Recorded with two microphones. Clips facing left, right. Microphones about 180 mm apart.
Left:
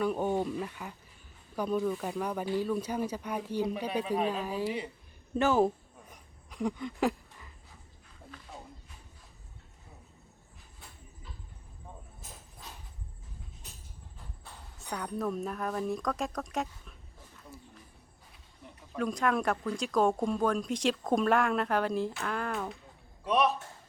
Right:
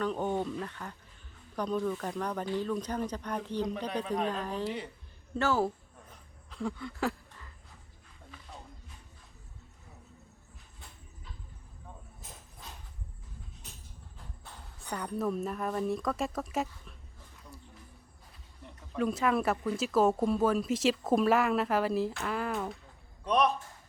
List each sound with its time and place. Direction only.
0.0 s speech: 10° left (ahead or behind)
5.3 s a sound: 15° left (ahead or behind)
14.8 s speech: centre (ahead or behind)
18.6 s speech: centre (ahead or behind)